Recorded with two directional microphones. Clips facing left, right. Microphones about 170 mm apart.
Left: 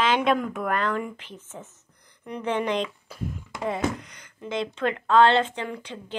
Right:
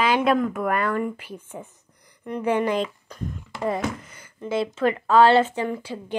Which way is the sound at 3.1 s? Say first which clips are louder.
Right 1 dB; 10° left (ahead or behind).